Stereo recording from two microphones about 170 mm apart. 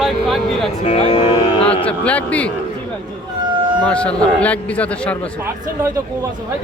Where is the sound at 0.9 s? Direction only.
40° left (ahead or behind).